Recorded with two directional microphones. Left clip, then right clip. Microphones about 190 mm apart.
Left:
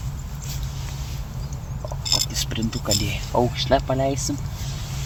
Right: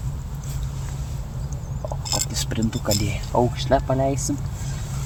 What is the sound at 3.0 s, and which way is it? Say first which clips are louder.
Speech: right 1 dB; 10° right (ahead or behind).